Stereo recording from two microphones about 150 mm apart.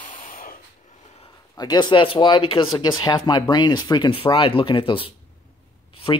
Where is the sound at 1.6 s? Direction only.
30° left (ahead or behind).